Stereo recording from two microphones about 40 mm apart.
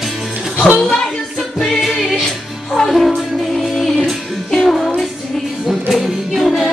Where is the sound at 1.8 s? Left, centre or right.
Centre.